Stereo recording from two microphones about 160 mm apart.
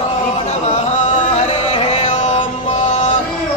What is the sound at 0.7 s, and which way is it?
Chant, 45° left (ahead or behind).